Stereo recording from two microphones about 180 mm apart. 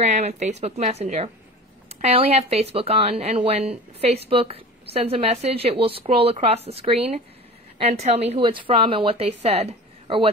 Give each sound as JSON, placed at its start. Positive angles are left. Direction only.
{"t": 0.0, "sound": "a woman's voice", "side_deg": -40}